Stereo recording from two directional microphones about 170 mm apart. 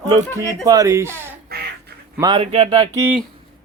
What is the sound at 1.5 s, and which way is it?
Duck, 65° right (ahead or behind).